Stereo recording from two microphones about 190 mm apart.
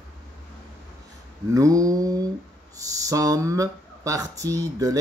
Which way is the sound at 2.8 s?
20° right (ahead or behind).